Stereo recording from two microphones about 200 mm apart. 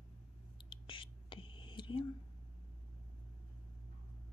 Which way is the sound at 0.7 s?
25° left (ahead or behind).